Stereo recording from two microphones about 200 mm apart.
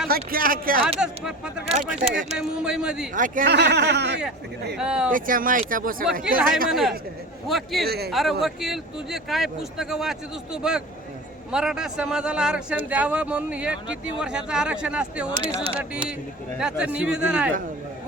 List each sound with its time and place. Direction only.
0.1 s speech: 45° right (ahead or behind)
0.9 s a man's voice: 5° right (ahead or behind)
1.7 s speech: 30° right (ahead or behind)
2.4 s a man's voice: 5° right (ahead or behind)
3.2 s speech: 40° right (ahead or behind); by 4.2 s 60° right (ahead or behind)
4.8 s a man's voice: 5° right (ahead or behind)
5.1 s speech: 45° right (ahead or behind)
6.2 s a man's voice: 5° right (ahead or behind)
7.9 s speech: 55° right (ahead or behind)
8.1 s a man's voice: centre (ahead or behind)
15.5 s speech: 30° right (ahead or behind)
16.6 s a man's voice: 5° right (ahead or behind)